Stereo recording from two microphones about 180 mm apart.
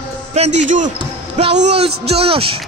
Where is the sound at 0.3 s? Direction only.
40° right (ahead or behind).